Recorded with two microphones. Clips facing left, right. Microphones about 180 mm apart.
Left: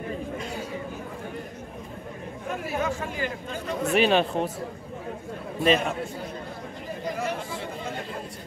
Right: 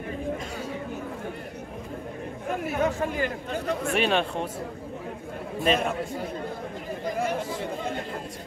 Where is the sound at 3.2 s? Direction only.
55° right (ahead or behind).